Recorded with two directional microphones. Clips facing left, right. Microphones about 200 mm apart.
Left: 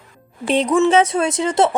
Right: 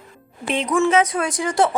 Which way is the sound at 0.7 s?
25° left (ahead or behind).